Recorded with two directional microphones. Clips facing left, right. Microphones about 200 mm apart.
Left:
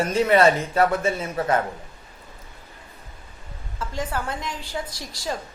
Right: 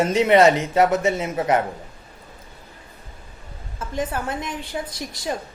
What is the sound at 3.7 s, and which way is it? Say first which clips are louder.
A man's voice: right 2 dB; 20° right (ahead or behind).